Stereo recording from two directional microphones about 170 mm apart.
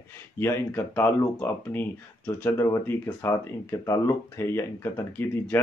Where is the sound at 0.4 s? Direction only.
15° left (ahead or behind).